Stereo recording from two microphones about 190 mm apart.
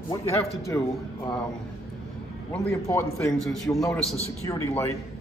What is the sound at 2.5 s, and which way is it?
Speech, 15° left (ahead or behind).